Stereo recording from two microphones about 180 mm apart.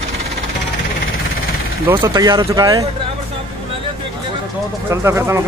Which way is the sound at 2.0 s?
20° right (ahead or behind).